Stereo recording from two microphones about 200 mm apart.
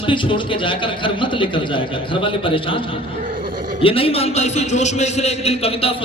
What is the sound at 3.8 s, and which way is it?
A man's voice, 30° left (ahead or behind).